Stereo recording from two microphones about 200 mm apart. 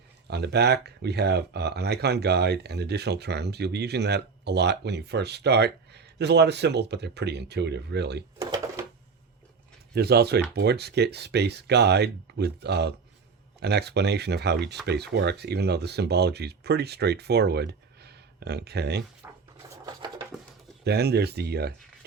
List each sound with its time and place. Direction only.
0.3 s speech: 55° right (ahead or behind)
8.4 s cash register: 20° right (ahead or behind)
9.9 s speech: 55° right (ahead or behind)
19.2 s drawer open or close: 15° right (ahead or behind)
19.7 s a sound: 20° right (ahead or behind)
20.8 s speech: 55° right (ahead or behind)